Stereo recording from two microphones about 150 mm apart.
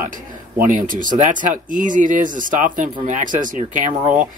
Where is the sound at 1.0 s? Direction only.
60° right (ahead or behind).